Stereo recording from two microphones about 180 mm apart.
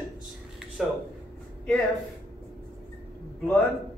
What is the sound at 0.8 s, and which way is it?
Speech, centre (ahead or behind).